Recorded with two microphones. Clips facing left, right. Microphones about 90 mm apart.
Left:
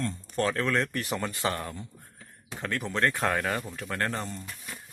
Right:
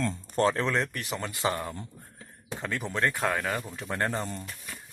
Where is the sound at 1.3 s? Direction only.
15° right (ahead or behind).